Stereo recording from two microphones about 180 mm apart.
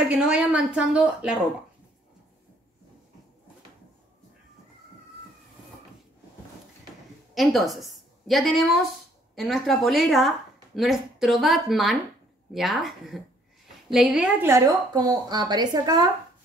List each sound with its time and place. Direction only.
0.1 s a woman's voice: 5° right (ahead or behind)
7.3 s a woman's voice: centre (ahead or behind); by 16.1 s 20° right (ahead or behind)